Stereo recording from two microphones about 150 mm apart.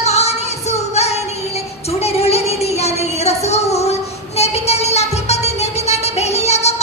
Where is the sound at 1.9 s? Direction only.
45° left (ahead or behind).